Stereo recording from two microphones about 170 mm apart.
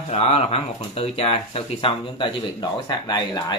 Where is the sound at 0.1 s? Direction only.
40° left (ahead or behind).